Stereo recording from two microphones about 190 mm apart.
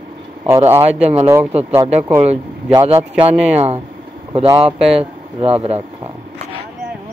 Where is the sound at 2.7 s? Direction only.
25° right (ahead or behind).